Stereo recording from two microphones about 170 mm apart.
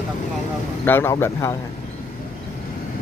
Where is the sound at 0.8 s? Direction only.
15° left (ahead or behind).